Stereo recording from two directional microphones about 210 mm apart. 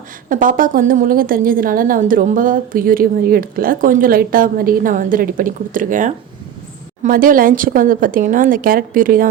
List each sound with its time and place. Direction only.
0.3 s a woman's voice: 40° right (ahead or behind)